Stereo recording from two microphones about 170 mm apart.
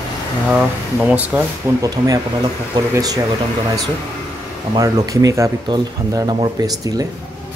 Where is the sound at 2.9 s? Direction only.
20° right (ahead or behind).